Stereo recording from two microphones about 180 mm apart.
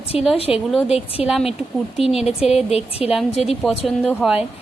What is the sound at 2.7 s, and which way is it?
Speech, 35° left (ahead or behind).